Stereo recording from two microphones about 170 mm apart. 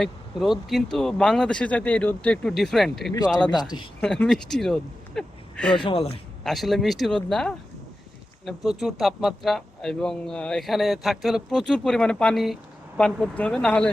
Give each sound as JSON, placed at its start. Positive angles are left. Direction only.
{"t": 0.0, "sound": "a man's voice", "side_deg": 0}
{"t": 3.5, "sound": "speech", "side_deg": 25}
{"t": 4.0, "sound": "speech", "side_deg": 5}
{"t": 5.7, "sound": "speech", "side_deg": 30}
{"t": 6.4, "sound": "a man's voice", "side_deg": 0}